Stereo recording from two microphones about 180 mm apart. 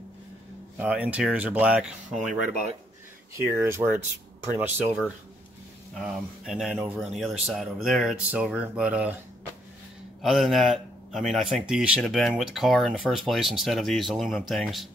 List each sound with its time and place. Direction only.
0.7 s speech: 10° right (ahead or behind)
3.5 s speech: 10° right (ahead or behind)
10.2 s speech: centre (ahead or behind)